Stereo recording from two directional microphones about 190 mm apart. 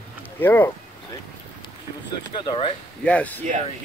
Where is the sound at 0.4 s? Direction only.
10° left (ahead or behind).